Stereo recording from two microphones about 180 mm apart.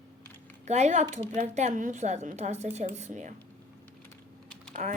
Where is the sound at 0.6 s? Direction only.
40° right (ahead or behind).